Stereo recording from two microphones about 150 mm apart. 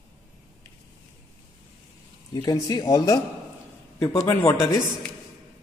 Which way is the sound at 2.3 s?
20° left (ahead or behind).